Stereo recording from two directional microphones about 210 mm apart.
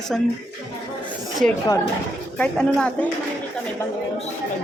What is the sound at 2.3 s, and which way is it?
Speech, 5° left (ahead or behind).